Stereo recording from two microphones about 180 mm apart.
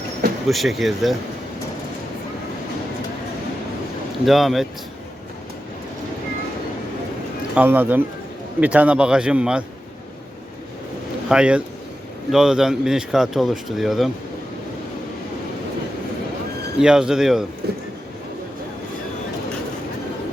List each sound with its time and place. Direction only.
0.5 s speech: centre (ahead or behind)
4.3 s speech: centre (ahead or behind)
7.5 s speech: 10° right (ahead or behind)
11.3 s speech: 5° right (ahead or behind)
16.8 s speech: 5° right (ahead or behind)
17.6 s speech: 60° right (ahead or behind)